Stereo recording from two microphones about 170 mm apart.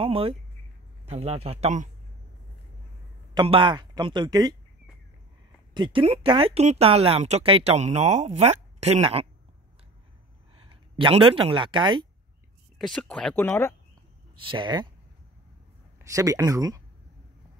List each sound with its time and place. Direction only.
0.0 s speech: 35° right (ahead or behind)
3.3 s speech: 30° right (ahead or behind)
5.8 s speech: 30° right (ahead or behind)
10.7 s speech: 30° right (ahead or behind)
12.7 s speech: 5° left (ahead or behind)
14.3 s speech: 30° right (ahead or behind)
16.0 s speech: 20° right (ahead or behind)